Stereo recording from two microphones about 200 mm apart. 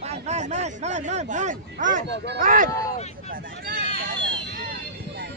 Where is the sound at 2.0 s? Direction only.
50° right (ahead or behind).